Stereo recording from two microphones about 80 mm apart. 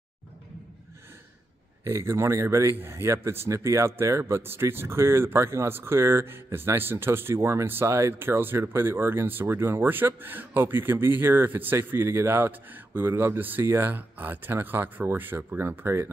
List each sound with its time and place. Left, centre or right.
1.9 s speech: right